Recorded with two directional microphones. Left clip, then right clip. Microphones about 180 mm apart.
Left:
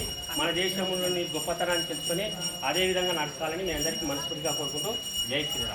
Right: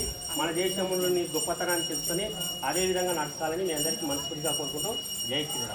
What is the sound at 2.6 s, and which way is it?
Jingle bell, 25° left (ahead or behind).